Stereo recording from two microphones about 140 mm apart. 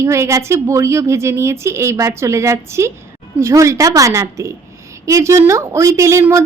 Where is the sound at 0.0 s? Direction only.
20° right (ahead or behind).